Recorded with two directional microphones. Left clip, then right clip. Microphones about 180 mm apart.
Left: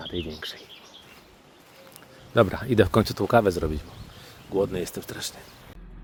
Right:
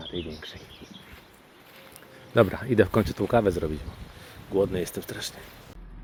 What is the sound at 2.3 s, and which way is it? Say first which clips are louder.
Speech: left 1 dB; 10° left (ahead or behind).